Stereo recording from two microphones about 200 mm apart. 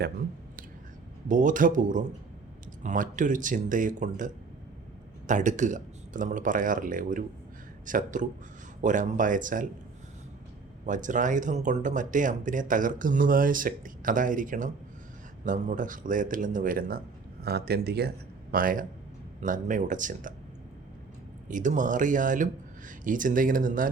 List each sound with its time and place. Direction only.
1.3 s speech: 40° right (ahead or behind)
10.8 s speech: 40° right (ahead or behind)
21.4 s speech: 40° right (ahead or behind)